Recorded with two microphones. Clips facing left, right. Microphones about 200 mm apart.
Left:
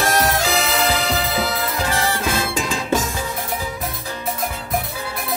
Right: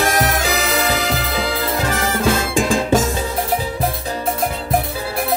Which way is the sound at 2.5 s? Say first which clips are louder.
Right 6 dB; 50° right (ahead or behind).